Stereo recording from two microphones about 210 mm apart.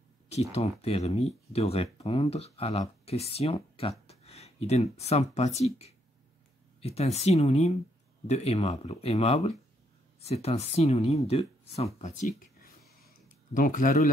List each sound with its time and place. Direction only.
0.3 s speech: 30° left (ahead or behind)
13.5 s speech: 40° left (ahead or behind)